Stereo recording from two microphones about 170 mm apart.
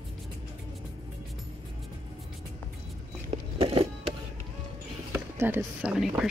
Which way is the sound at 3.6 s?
35° right (ahead or behind).